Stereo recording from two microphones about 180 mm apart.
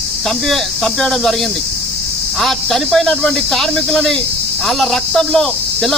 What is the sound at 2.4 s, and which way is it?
Speech, centre (ahead or behind).